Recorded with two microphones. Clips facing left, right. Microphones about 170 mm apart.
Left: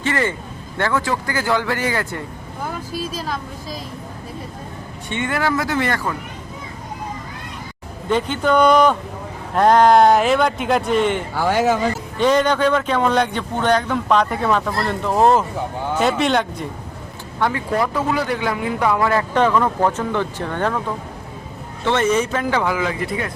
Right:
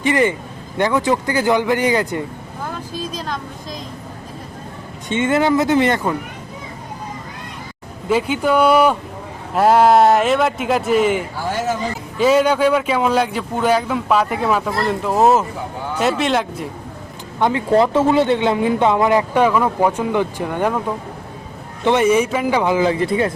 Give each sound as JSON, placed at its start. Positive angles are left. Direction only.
{"t": 0.0, "sound": "speech", "side_deg": -15}
{"t": 2.6, "sound": "speech", "side_deg": 10}
{"t": 5.0, "sound": "speech", "side_deg": -20}
{"t": 8.1, "sound": "speech", "side_deg": -10}
{"t": 11.3, "sound": "speech", "side_deg": 70}
{"t": 12.1, "sound": "speech", "side_deg": -5}
{"t": 17.4, "sound": "speech", "side_deg": -25}
{"t": 21.8, "sound": "speech", "side_deg": -10}
{"t": 22.7, "sound": "speech", "side_deg": -30}